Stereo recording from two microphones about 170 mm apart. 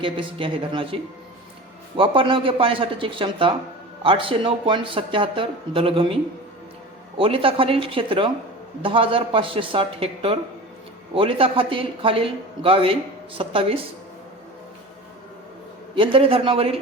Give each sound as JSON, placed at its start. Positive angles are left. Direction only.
{"t": 0.0, "sound": "a man's voice", "side_deg": -30}
{"t": 2.0, "sound": "a man's voice", "side_deg": -30}
{"t": 7.2, "sound": "a man's voice", "side_deg": -30}
{"t": 16.0, "sound": "a man's voice", "side_deg": -35}